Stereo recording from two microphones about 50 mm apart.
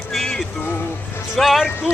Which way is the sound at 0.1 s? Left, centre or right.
Centre.